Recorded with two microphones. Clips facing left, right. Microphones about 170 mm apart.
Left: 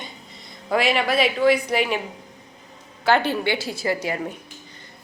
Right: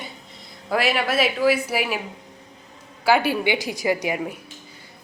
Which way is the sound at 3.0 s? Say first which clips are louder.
Right 1 dB; 10° right (ahead or behind).